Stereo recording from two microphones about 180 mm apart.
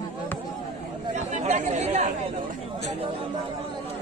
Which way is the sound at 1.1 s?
40° right (ahead or behind).